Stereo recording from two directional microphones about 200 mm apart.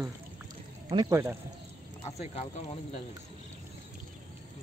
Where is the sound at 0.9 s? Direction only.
20° right (ahead or behind).